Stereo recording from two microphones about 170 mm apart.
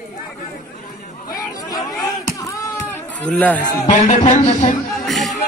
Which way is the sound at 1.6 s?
20° left (ahead or behind).